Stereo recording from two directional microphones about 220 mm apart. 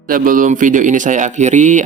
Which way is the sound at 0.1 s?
40° right (ahead or behind).